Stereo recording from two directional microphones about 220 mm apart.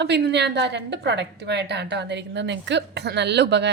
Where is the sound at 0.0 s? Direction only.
50° right (ahead or behind).